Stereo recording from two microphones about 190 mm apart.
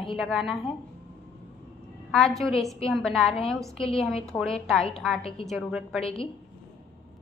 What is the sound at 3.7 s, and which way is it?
Speech, 30° left (ahead or behind).